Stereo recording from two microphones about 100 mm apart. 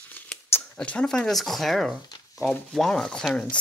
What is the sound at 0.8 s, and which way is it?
Speech, 10° left (ahead or behind).